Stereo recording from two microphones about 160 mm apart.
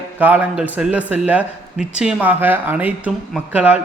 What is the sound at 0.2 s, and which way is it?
A man's voice, 10° right (ahead or behind).